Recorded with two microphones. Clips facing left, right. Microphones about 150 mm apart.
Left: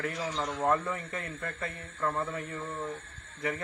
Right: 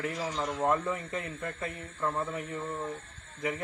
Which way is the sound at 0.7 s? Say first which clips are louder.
Even; 20° right (ahead or behind).